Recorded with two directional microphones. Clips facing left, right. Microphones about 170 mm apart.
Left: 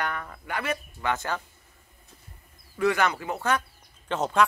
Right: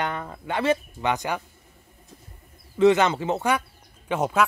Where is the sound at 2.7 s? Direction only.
20° right (ahead or behind).